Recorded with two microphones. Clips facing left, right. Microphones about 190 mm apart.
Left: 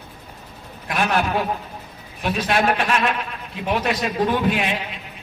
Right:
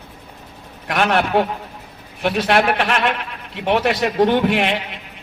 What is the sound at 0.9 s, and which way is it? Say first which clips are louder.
A man's voice: right 4 dB; 70° right (ahead or behind).